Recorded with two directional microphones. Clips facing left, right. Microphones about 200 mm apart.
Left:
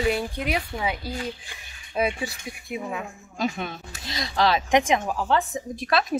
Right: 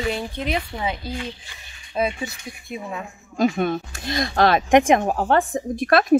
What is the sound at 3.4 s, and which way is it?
Speech, 50° right (ahead or behind).